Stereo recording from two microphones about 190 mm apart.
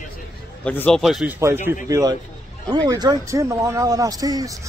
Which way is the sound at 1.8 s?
15° right (ahead or behind).